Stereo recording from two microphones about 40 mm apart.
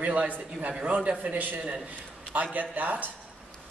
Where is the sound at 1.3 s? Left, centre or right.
Right.